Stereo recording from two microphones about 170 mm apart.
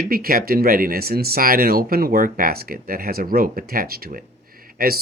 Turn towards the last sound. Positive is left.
turn(degrees=-60)  # may be behind; listen again after turning